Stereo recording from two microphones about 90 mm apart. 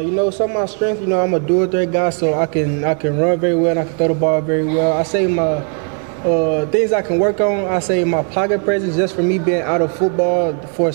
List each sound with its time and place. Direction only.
0.6 s a man's voice: 20° right (ahead or behind)